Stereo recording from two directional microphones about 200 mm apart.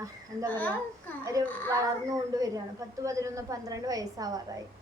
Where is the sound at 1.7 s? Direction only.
15° right (ahead or behind).